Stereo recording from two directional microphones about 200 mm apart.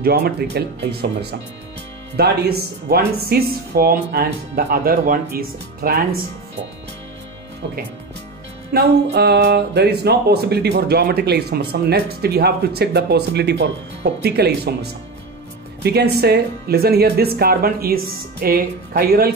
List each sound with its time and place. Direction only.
0.0 s speech: 50° right (ahead or behind)
2.1 s speech: 55° right (ahead or behind)
8.7 s speech: 55° right (ahead or behind)